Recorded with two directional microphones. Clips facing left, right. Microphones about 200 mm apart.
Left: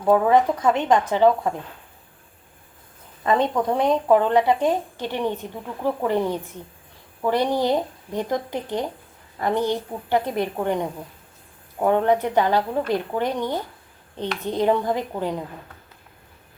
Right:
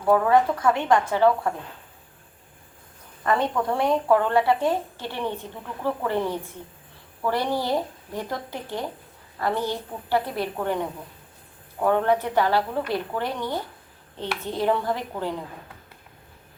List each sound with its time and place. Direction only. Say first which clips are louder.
0.0 s speech: left 2 dB; 20° left (ahead or behind)
3.2 s a woman's voice: left 3 dB; 20° left (ahead or behind)